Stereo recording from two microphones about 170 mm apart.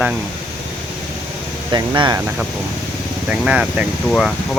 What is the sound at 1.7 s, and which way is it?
Speech, 25° right (ahead or behind).